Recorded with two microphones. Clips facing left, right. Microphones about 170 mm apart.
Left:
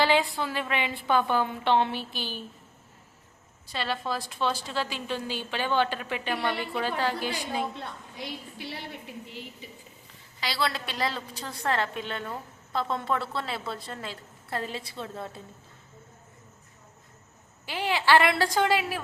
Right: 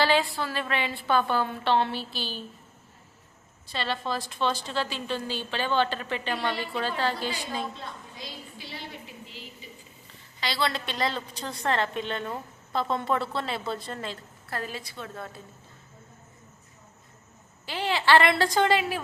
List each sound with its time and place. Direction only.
0.0 s a woman's voice: 15° left (ahead or behind)
3.7 s a woman's voice: 10° left (ahead or behind)
7.8 s a woman's voice: 65° left (ahead or behind)
10.4 s a woman's voice: 5° left (ahead or behind)
14.5 s a woman's voice: 25° left (ahead or behind)
17.7 s a woman's voice: 10° left (ahead or behind)